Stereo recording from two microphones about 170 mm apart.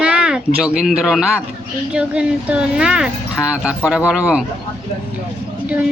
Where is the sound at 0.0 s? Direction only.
5° right (ahead or behind).